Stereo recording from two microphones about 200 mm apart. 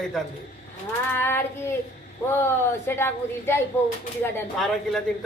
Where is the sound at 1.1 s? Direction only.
10° left (ahead or behind).